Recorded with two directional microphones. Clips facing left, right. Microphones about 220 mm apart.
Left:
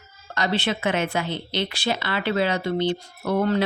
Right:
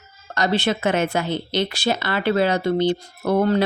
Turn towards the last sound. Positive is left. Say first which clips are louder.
# right 3 dB
turn(degrees=-40)  # may be behind; listen again after turning